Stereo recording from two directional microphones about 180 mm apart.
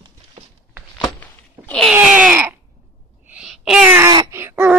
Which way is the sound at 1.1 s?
10° left (ahead or behind).